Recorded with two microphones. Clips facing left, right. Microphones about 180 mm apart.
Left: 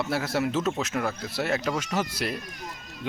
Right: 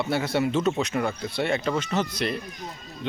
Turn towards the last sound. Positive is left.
turn(degrees=5)  # may be behind; listen again after turning